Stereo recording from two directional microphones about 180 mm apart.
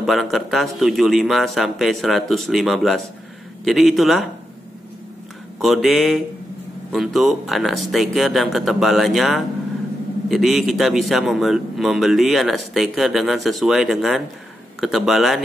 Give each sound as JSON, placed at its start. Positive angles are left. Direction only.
{"t": 0.0, "sound": "a man's voice", "side_deg": 0}
{"t": 5.6, "sound": "a man's voice", "side_deg": 0}